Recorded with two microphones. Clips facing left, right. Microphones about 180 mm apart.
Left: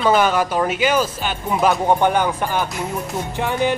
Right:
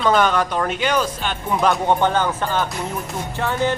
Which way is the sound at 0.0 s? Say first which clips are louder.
Left 1 dB; 5° left (ahead or behind).